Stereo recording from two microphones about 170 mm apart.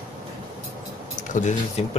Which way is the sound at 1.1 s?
45° left (ahead or behind).